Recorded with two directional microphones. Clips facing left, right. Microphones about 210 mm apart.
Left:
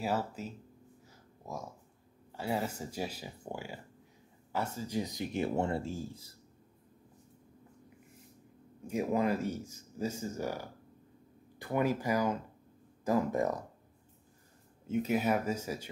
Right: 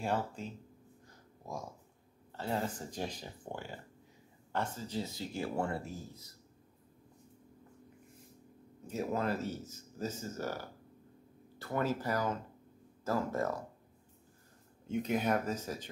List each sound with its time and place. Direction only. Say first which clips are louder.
0.0 s speech: left 1 dB; 5° left (ahead or behind)
1.0 s a sound: left 1 dB; 5° left (ahead or behind)
2.3 s speech: left 2 dB; 10° left (ahead or behind); by 6.3 s 30° left (ahead or behind)
8.8 s speech: left 4 dB; 15° left (ahead or behind)
14.9 s speech: left 2 dB; 5° left (ahead or behind)